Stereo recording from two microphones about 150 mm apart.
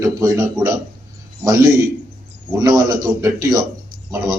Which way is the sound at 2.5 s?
25° right (ahead or behind).